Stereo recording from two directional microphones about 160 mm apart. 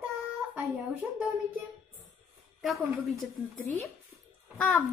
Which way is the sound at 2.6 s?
Centre (ahead or behind).